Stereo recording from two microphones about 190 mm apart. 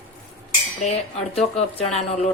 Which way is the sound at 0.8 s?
35° left (ahead or behind).